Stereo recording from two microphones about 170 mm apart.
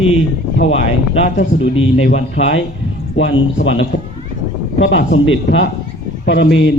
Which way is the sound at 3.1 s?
90° left.